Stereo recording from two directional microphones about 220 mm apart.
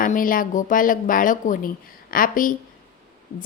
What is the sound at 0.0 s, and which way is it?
A woman's voice, 40° left (ahead or behind).